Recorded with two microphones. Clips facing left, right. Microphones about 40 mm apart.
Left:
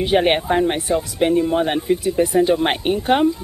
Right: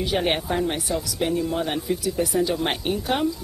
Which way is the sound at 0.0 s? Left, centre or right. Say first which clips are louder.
Left 7 dB; left.